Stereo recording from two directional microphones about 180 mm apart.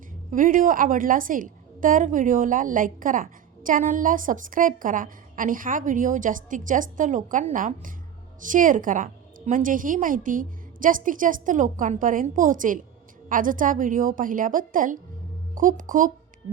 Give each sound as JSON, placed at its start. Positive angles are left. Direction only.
{"t": 0.3, "sound": "a woman's voice", "side_deg": -45}